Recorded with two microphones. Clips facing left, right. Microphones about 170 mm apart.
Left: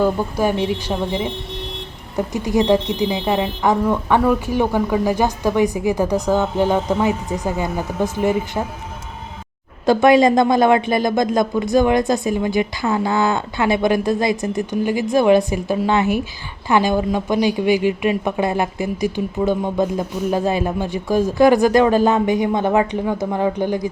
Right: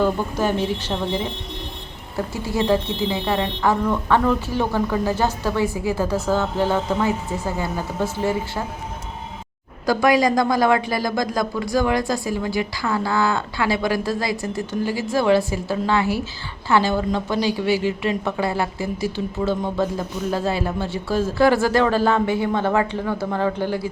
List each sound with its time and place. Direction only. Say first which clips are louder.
0.0 s a woman's voice: left 3 dB; 10° left (ahead or behind)
9.8 s a woman's voice: left 5 dB; 25° left (ahead or behind)